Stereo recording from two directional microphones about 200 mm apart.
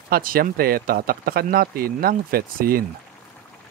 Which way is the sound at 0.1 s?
45° right (ahead or behind).